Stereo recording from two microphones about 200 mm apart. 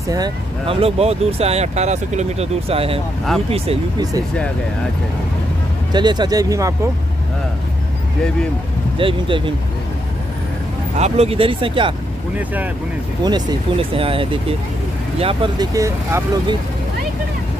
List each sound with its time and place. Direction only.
0.1 s speech: 25° right (ahead or behind)
5.9 s speech: 20° right (ahead or behind)
8.9 s speech: 25° right (ahead or behind)
11.0 s speech: 30° right (ahead or behind)
13.2 s speech: 20° right (ahead or behind)